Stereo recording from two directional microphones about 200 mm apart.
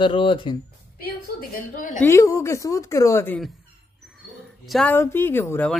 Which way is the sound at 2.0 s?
15° left (ahead or behind).